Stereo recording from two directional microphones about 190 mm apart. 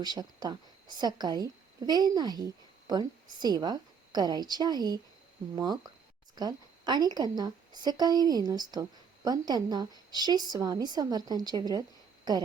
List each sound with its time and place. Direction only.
0.0 s a woman's voice: 20° right (ahead or behind)